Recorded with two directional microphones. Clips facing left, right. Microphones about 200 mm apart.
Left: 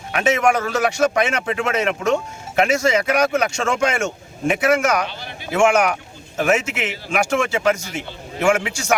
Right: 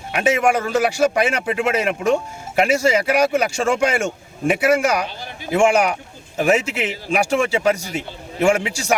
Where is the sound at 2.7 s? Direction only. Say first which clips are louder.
Right 2 dB; 30° right (ahead or behind).